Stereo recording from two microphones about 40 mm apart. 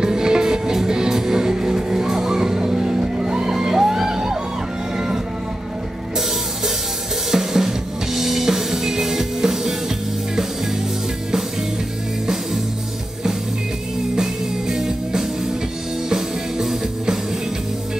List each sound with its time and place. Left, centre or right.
0.0 s music: centre
7.2 s music: centre
14.1 s music: centre